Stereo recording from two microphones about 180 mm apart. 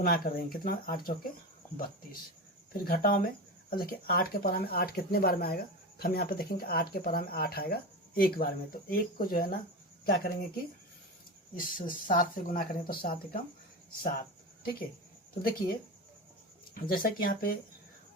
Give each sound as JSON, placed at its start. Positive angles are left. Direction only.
{"t": 0.0, "sound": "speech", "side_deg": 55}
{"t": 2.7, "sound": "speech", "side_deg": 55}
{"t": 16.9, "sound": "speech", "side_deg": 55}